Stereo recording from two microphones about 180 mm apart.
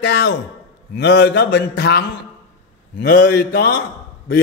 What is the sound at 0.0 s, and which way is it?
Speech, 70° left (ahead or behind).